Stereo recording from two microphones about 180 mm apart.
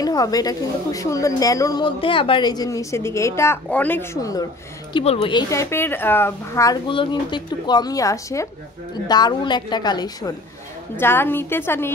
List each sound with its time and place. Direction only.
0.0 s a woman's voice: 20° left (ahead or behind)
4.9 s a woman's voice: 30° left (ahead or behind); by 6.8 s 15° left (ahead or behind)
6.9 s a woman's voice: 25° left (ahead or behind); by 11.9 s 10° left (ahead or behind)